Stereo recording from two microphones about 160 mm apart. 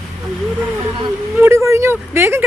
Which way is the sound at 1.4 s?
15° right (ahead or behind).